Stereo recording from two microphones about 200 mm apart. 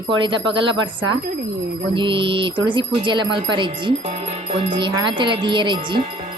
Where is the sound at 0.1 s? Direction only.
25° right (ahead or behind).